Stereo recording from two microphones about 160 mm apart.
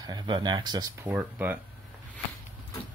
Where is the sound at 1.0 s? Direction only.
10° right (ahead or behind).